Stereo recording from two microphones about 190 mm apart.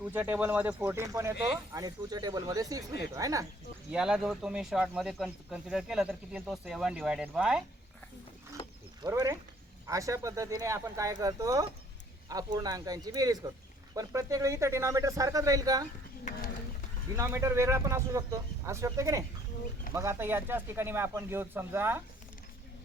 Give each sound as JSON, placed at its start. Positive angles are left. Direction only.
{"t": 0.0, "sound": "speech", "side_deg": -10}
{"t": 3.9, "sound": "speech", "side_deg": -5}
{"t": 9.0, "sound": "speech", "side_deg": -15}
{"t": 17.2, "sound": "speech", "side_deg": -15}